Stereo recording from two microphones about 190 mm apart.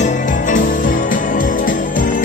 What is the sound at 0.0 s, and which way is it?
Jingle bell, 45° left (ahead or behind).